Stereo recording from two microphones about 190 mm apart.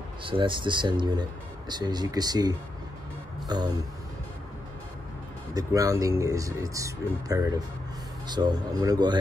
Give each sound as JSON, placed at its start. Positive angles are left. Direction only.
{"t": 0.2, "sound": "speech", "side_deg": -25}
{"t": 5.5, "sound": "speech", "side_deg": -20}